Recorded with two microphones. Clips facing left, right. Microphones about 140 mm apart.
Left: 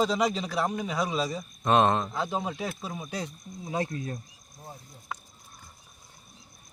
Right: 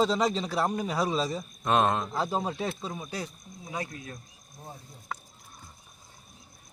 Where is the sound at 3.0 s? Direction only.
20° left (ahead or behind); by 4.2 s 35° left (ahead or behind).